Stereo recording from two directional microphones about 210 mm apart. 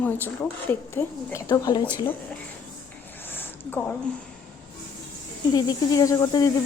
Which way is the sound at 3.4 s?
10° left (ahead or behind).